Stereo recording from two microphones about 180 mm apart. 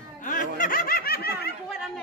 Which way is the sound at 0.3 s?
50° left (ahead or behind).